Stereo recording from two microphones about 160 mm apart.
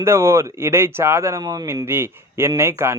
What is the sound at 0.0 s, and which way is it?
A man's voice, 15° right (ahead or behind).